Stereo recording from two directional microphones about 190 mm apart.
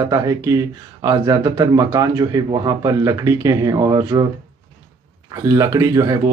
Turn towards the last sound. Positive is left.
turn(degrees=-20)  # may be behind; listen again after turning